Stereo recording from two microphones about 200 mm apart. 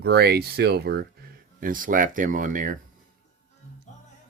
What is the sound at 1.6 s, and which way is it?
Speech, 40° right (ahead or behind).